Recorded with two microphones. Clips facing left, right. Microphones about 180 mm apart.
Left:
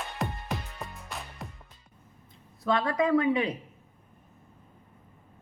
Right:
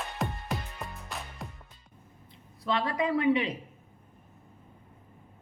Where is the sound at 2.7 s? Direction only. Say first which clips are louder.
Left 4 dB; 25° right (ahead or behind).